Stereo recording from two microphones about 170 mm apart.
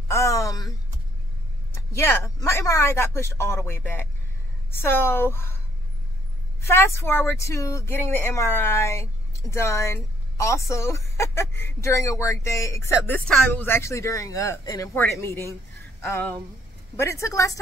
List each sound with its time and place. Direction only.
0.1 s a sound: 15° left (ahead or behind)
1.8 s speech: 15° left (ahead or behind)
6.6 s speech: 15° left (ahead or behind)
16.9 s speech: 15° left (ahead or behind)